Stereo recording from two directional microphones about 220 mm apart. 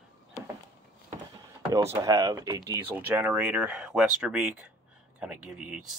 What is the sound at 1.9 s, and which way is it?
Speech, 15° right (ahead or behind).